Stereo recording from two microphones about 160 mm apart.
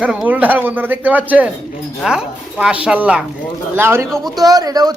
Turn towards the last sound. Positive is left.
turn(degrees=-25)  # may be behind; listen again after turning